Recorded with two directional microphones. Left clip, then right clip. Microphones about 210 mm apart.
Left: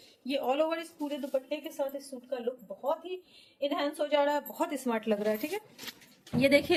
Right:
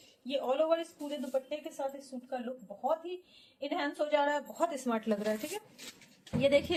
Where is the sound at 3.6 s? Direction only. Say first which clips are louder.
Left 3 dB; 45° left (ahead or behind).